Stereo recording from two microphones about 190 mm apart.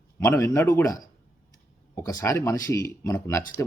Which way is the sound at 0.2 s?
15° left (ahead or behind).